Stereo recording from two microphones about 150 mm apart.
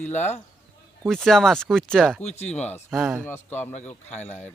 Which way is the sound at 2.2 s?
45° left (ahead or behind).